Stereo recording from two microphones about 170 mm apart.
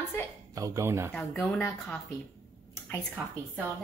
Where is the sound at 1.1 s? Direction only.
10° left (ahead or behind).